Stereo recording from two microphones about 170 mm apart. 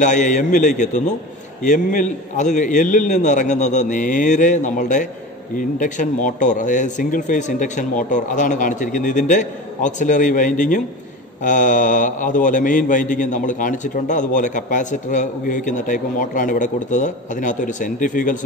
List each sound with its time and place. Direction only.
0.0 s a man's voice: 45° left (ahead or behind)